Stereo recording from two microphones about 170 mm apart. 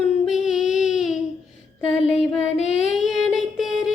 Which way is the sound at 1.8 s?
35° left (ahead or behind).